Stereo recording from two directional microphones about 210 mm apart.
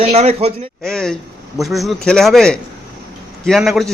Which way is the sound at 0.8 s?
Centre (ahead or behind).